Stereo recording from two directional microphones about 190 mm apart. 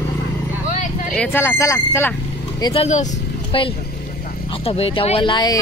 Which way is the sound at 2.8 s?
40° left (ahead or behind).